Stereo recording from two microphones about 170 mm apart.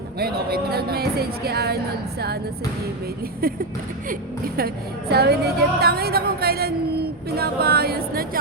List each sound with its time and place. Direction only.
0.2 s a woman's voice: 65° right (ahead or behind)
3.4 s a woman's voice: 60° right (ahead or behind)